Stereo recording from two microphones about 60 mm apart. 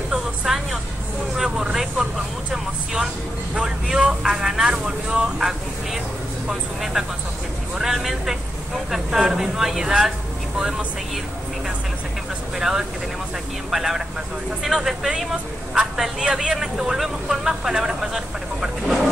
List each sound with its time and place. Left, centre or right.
0.5 s a man's voice: centre
12.5 s a man's voice: centre